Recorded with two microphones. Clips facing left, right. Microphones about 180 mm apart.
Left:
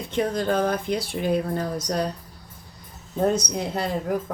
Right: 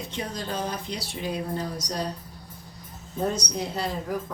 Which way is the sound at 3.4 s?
55° left (ahead or behind).